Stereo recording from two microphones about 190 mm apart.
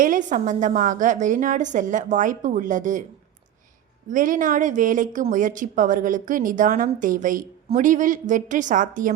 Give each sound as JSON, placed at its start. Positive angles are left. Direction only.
{"t": 0.0, "sound": "a woman's voice", "side_deg": -45}
{"t": 4.1, "sound": "speech", "side_deg": -45}